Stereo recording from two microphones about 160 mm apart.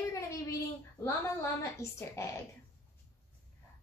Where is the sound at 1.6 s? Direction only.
15° left (ahead or behind).